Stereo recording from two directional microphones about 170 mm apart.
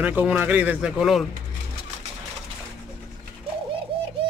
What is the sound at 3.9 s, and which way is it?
Bird, 30° right (ahead or behind).